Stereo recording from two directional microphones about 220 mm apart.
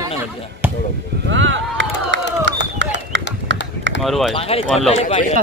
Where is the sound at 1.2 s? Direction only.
55° right (ahead or behind).